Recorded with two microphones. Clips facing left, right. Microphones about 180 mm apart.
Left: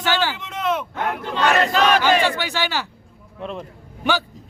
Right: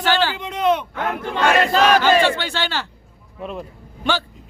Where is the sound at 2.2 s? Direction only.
15° left (ahead or behind).